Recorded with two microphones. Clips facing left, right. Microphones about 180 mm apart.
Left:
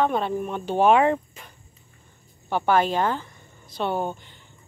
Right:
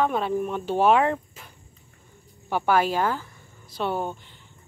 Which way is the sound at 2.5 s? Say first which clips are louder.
Left 1 dB; 5° right (ahead or behind).